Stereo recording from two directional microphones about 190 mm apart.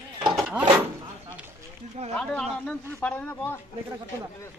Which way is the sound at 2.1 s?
5° left (ahead or behind).